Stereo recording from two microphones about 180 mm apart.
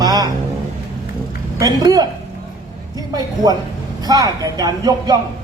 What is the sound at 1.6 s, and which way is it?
A man's voice, 20° right (ahead or behind).